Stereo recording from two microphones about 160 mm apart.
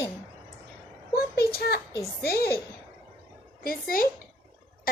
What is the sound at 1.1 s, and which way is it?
Speech, 70° left (ahead or behind).